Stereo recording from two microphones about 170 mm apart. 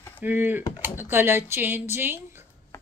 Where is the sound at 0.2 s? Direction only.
10° right (ahead or behind).